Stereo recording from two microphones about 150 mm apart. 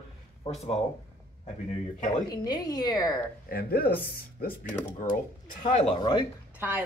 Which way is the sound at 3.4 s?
80° left.